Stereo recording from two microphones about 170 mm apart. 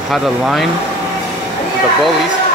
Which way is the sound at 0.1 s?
Centre (ahead or behind).